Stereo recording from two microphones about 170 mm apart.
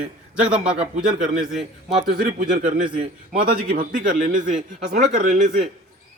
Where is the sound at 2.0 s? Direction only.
55° right (ahead or behind).